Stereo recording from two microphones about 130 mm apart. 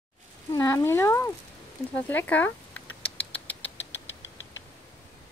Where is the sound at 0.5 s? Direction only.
25° left (ahead or behind).